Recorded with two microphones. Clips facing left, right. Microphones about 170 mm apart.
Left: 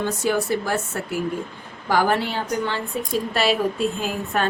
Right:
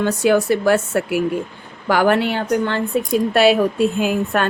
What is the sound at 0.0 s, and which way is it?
A woman's voice, 80° right.